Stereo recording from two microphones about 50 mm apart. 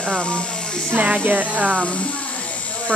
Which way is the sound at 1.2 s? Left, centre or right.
Right.